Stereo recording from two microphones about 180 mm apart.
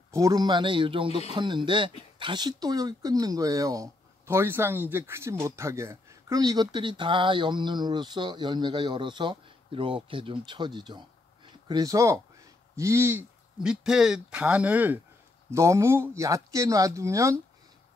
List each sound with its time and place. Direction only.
0.1 s speech: 20° right (ahead or behind)